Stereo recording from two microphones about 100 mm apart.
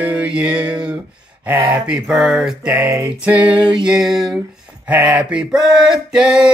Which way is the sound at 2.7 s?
25° right (ahead or behind).